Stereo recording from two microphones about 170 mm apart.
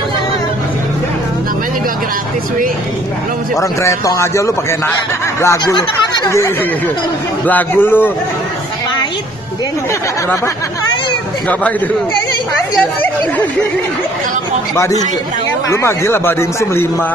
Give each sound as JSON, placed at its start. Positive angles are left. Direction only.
{"t": 3.5, "sound": "speech", "side_deg": 20}
{"t": 14.8, "sound": "speech", "side_deg": 20}